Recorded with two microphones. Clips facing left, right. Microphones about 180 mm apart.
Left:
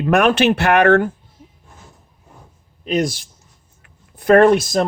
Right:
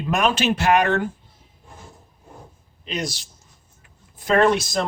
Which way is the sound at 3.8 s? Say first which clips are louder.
Left 5 dB; 60° left (ahead or behind).